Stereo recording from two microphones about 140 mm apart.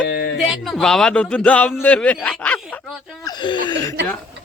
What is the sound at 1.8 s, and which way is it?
Speech, 10° left (ahead or behind).